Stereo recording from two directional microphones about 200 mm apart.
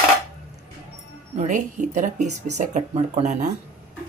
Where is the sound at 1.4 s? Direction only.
35° right (ahead or behind).